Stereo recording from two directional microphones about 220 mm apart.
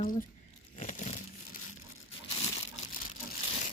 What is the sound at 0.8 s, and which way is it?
Crushing, 30° left (ahead or behind).